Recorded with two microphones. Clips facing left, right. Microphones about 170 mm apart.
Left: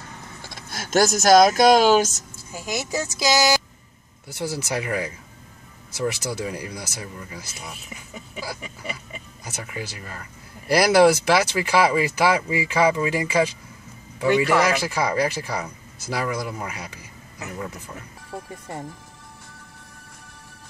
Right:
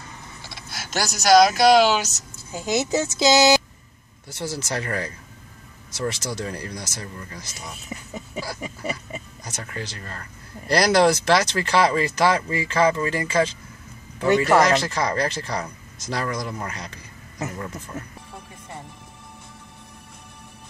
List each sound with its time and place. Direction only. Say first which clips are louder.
0.6 s speech: left 8 dB; 45° left (ahead or behind)
2.5 s speech: right 5 dB; 25° right (ahead or behind)
4.3 s speech: left 2 dB; 10° left (ahead or behind)
8.5 s oink: right 5 dB; 40° right (ahead or behind)
9.4 s speech: left 3 dB; 10° left (ahead or behind)